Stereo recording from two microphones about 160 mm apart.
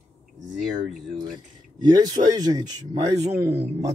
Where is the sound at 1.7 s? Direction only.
25° right (ahead or behind).